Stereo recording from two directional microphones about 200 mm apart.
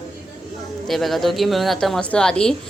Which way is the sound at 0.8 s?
Centre (ahead or behind).